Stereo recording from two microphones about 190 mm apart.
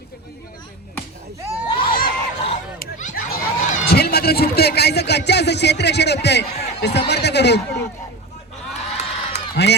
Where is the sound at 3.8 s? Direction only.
55° left (ahead or behind).